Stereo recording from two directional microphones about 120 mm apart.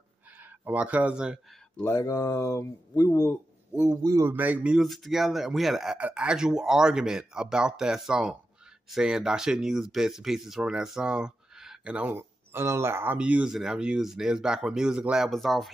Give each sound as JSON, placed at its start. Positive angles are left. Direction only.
{"t": 0.4, "sound": "speech", "side_deg": -15}
{"t": 1.8, "sound": "speech", "side_deg": 20}
{"t": 3.9, "sound": "speech", "side_deg": -30}